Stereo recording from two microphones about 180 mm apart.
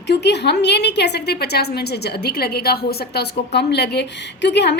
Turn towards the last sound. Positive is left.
turn(degrees=70)  # may be behind; listen again after turning